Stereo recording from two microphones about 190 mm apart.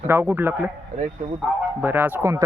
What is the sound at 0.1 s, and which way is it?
Speech, 10° right (ahead or behind).